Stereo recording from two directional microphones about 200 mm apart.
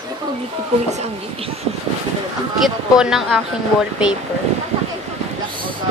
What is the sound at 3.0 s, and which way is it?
Speech, 5° right (ahead or behind).